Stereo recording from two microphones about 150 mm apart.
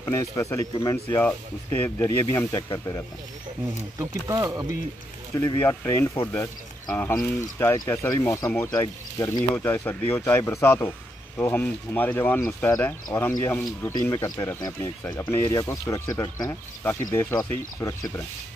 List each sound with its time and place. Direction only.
0.0 s speech: 20° left (ahead or behind)
4.0 s speech: 20° right (ahead or behind)
5.3 s speech: 20° left (ahead or behind)